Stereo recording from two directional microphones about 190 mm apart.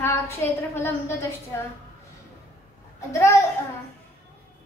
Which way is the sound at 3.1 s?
15° left (ahead or behind).